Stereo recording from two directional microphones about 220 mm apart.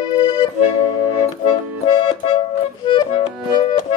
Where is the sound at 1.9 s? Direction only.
20° left (ahead or behind).